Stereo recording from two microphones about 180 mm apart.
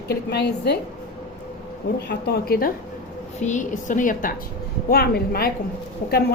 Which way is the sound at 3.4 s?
45° left (ahead or behind).